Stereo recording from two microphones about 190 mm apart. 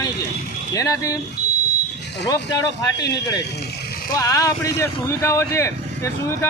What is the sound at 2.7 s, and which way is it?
Speech, 65° left (ahead or behind).